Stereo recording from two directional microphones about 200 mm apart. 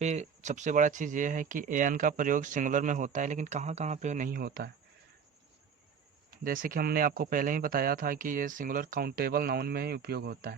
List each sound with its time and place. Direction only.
0.0 s speech: 35° right (ahead or behind)
6.4 s speech: 45° right (ahead or behind)